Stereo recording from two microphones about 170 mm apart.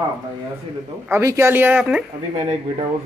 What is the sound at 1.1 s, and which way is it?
Speech, 15° right (ahead or behind).